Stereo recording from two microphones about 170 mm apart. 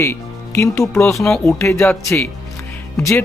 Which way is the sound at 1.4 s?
15° left (ahead or behind).